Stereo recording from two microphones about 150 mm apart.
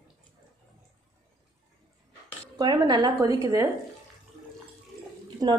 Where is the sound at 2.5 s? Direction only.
30° right (ahead or behind).